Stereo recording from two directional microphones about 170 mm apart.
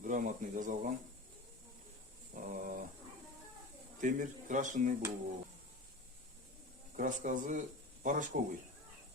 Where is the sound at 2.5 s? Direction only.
55° right (ahead or behind).